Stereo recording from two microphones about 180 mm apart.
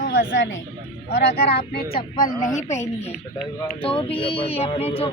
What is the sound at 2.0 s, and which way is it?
Speech, 50° left (ahead or behind).